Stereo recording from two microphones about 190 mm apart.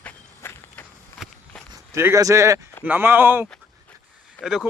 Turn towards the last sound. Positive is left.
turn(degrees=-5)  # may be behind; listen again after turning